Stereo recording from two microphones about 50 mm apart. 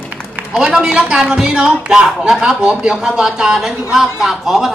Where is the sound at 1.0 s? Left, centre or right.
Centre.